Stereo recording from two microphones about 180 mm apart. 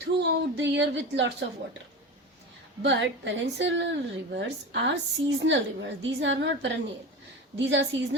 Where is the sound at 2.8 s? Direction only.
90° right; by 4.9 s 75° right (ahead or behind).